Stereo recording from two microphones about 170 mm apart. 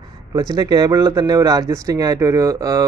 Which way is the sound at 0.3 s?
20° right (ahead or behind).